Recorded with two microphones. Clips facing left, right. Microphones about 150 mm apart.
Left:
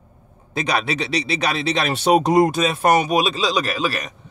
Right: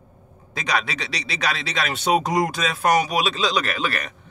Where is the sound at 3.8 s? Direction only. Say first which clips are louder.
Left 3 dB; 15° left (ahead or behind).